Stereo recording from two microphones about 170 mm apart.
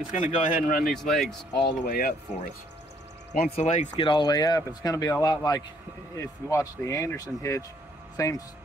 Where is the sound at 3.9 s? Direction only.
30° left (ahead or behind).